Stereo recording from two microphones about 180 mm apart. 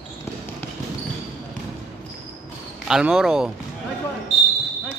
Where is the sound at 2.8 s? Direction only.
5° right (ahead or behind).